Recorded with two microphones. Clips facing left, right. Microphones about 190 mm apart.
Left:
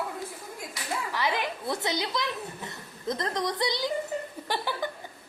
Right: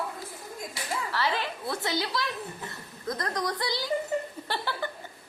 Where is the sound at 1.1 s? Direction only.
15° left (ahead or behind).